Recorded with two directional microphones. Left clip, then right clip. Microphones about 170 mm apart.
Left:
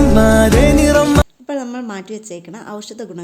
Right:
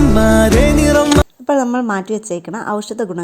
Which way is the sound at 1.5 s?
30° right (ahead or behind).